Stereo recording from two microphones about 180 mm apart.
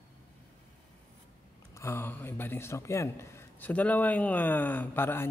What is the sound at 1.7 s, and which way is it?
A man's voice, 15° left (ahead or behind).